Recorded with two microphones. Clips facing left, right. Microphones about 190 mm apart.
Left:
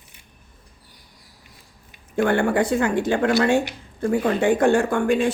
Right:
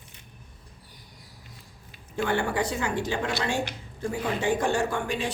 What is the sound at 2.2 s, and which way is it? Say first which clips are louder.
Speech: left 7 dB; 55° left (ahead or behind).